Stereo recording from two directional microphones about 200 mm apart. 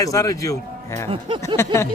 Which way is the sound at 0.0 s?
15° left (ahead or behind).